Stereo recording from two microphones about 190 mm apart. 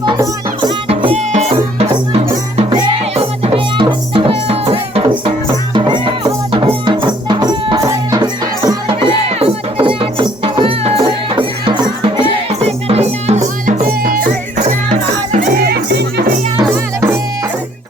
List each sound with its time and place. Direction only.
0.0 s music: 25° right (ahead or behind); by 16.3 s 60° right (ahead or behind)
16.6 s music: 15° right (ahead or behind)